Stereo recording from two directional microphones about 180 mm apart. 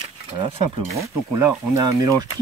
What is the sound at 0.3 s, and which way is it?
Speech, 30° right (ahead or behind).